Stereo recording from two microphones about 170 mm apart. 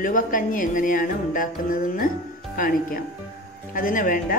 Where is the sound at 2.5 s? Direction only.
55° left (ahead or behind).